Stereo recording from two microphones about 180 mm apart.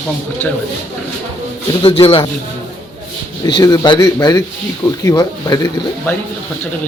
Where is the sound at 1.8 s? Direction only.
35° left (ahead or behind).